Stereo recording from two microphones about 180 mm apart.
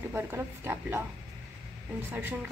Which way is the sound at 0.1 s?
10° right (ahead or behind).